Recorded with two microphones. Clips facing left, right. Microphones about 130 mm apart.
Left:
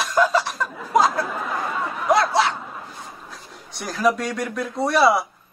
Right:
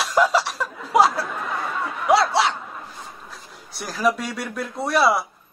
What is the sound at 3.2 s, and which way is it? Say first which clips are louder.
Speech: left 1 dB; centre (ahead or behind).